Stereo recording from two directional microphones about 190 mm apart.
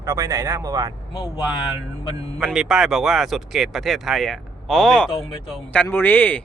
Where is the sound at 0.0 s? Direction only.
15° right (ahead or behind).